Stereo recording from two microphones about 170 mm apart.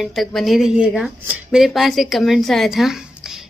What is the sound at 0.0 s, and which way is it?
A woman's voice, centre (ahead or behind).